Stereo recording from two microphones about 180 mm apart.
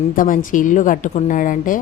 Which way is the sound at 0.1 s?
50° left (ahead or behind).